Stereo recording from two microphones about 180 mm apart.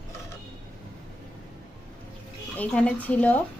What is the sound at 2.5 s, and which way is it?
Speech, 5° left (ahead or behind).